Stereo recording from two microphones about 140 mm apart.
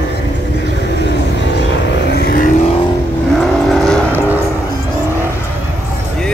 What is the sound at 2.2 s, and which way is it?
Vehicle, 90° left.